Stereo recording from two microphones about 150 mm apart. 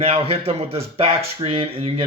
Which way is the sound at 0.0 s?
40° right (ahead or behind).